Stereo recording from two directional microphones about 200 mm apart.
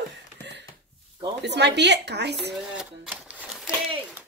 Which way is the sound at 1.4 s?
60° right (ahead or behind).